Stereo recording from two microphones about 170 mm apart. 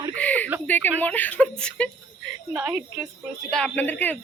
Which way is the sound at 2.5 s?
10° right (ahead or behind).